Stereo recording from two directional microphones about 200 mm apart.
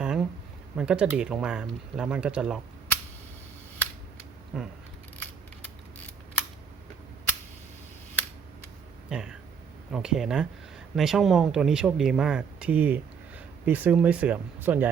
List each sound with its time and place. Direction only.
0.0 s a sound: 5° right (ahead or behind)
0.8 s speech: 5° right (ahead or behind)
4.5 s speech: 5° right (ahead or behind)
9.0 s speech: 5° right (ahead or behind)